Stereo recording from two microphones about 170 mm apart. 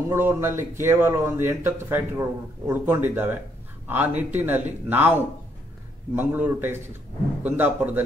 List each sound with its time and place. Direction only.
0.1 s speech: 15° right (ahead or behind)